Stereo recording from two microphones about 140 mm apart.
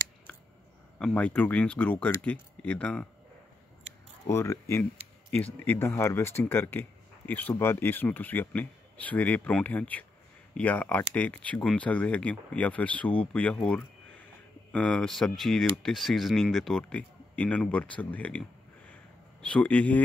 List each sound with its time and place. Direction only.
0.9 s speech: 10° left (ahead or behind)
4.3 s speech: 20° left (ahead or behind)